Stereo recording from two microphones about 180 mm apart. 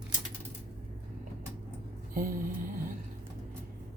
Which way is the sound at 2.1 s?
50° right (ahead or behind).